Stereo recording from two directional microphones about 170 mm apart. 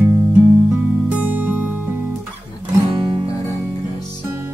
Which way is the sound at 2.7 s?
20° right (ahead or behind).